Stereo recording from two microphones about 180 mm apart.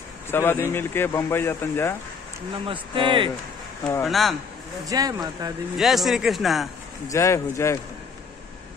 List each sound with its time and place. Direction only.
0.3 s speech: 10° left (ahead or behind)
2.6 s speech: 30° right (ahead or behind)
4.0 s speech: centre (ahead or behind)
4.8 s speech: 20° right (ahead or behind)
5.8 s speech: centre (ahead or behind)
7.1 s speech: 15° left (ahead or behind)